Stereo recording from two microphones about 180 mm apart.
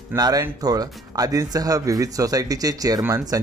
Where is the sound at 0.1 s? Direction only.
20° right (ahead or behind).